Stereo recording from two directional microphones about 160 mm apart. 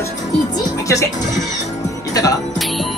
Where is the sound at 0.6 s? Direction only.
20° left (ahead or behind).